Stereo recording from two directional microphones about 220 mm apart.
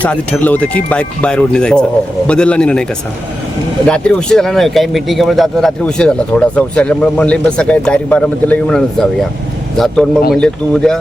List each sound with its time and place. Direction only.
0.0 s speech: 5° left (ahead or behind)
3.8 s speech: 5° left (ahead or behind)